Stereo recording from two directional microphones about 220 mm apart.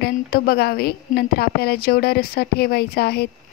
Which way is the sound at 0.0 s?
45° left (ahead or behind).